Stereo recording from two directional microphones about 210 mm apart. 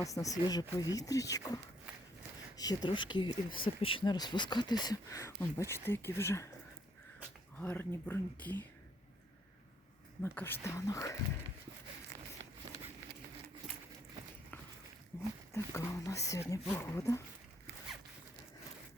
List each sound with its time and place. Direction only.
0.0 s speech: 15° left (ahead or behind)
2.6 s speech: 20° left (ahead or behind)
7.6 s speech: 10° left (ahead or behind)
10.2 s speech: 10° left (ahead or behind)
15.1 s speech: 15° left (ahead or behind)